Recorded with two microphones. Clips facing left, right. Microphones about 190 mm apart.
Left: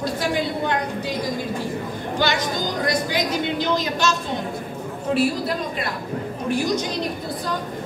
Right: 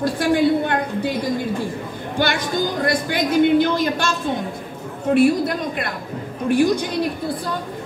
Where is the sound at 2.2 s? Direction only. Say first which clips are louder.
Right 3 dB; 55° right (ahead or behind).